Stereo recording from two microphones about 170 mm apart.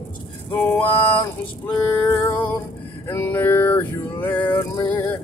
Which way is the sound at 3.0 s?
10° left (ahead or behind).